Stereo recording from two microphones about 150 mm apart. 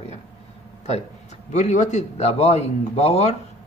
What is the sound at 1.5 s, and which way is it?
Speech, 55° left (ahead or behind).